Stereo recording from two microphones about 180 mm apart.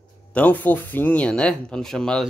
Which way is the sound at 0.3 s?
10° left (ahead or behind).